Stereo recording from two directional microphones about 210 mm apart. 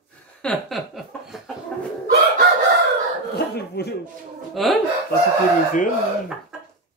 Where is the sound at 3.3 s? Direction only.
50° left (ahead or behind).